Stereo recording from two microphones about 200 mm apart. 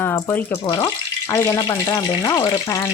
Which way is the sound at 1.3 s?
15° left (ahead or behind).